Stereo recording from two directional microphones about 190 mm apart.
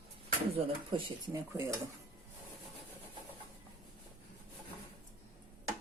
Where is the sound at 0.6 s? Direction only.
25° right (ahead or behind).